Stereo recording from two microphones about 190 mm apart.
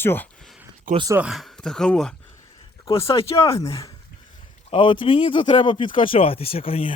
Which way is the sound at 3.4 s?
15° left (ahead or behind).